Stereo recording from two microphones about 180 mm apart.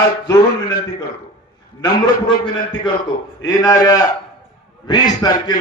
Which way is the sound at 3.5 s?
20° left (ahead or behind).